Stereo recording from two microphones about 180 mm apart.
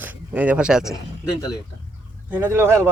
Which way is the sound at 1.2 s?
20° left (ahead or behind).